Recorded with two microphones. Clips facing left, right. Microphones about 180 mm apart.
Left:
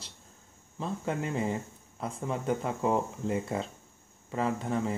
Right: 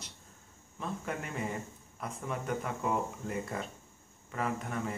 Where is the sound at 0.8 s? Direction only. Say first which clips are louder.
Left 5 dB; 25° left (ahead or behind).